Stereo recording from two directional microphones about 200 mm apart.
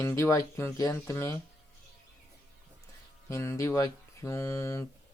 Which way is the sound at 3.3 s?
15° left (ahead or behind).